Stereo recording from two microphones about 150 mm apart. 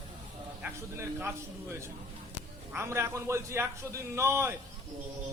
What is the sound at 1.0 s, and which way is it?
A man's voice, 15° right (ahead or behind).